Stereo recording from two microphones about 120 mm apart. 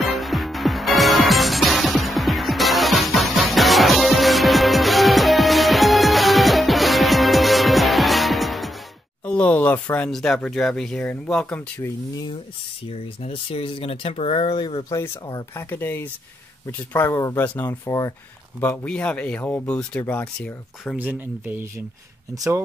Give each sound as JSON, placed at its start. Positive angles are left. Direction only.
{"t": 0.0, "sound": "music", "side_deg": 0}
{"t": 9.2, "sound": "speech", "side_deg": 10}
{"t": 12.9, "sound": "speech", "side_deg": 55}
{"t": 14.9, "sound": "speech", "side_deg": 30}
{"t": 18.6, "sound": "speech", "side_deg": 15}
{"t": 21.0, "sound": "speech", "side_deg": -15}